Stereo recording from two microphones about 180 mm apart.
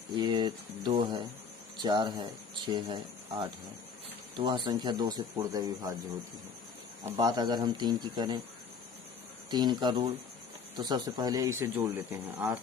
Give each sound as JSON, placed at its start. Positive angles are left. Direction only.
{"t": 0.2, "sound": "speech", "side_deg": -25}
{"t": 7.0, "sound": "speech", "side_deg": -20}
{"t": 9.5, "sound": "speech", "side_deg": -25}